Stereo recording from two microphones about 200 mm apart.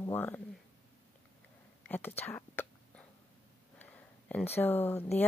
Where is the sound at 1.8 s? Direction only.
10° left (ahead or behind).